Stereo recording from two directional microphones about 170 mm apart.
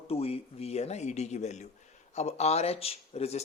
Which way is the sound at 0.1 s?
35° left (ahead or behind).